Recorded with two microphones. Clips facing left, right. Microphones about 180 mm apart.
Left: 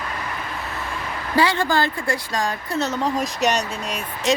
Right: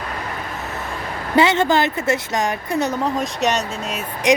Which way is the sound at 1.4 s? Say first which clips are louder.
Right 4 dB; 20° right (ahead or behind).